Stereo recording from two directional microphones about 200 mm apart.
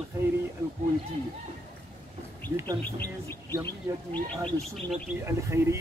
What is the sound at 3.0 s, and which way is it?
Speech, 10° left (ahead or behind).